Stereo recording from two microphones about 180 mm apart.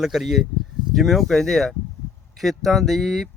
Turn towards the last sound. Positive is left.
turn(degrees=0)  # may be behind; listen again after turning